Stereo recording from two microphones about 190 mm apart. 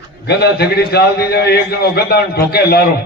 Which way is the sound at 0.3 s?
60° left (ahead or behind).